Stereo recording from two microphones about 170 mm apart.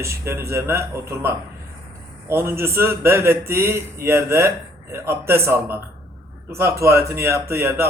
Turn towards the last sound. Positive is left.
turn(degrees=-15)  # may be behind; listen again after turning